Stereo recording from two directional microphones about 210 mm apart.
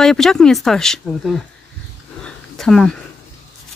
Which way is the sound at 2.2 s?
Centre (ahead or behind).